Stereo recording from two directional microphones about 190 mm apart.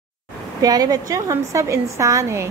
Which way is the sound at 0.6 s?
20° right (ahead or behind).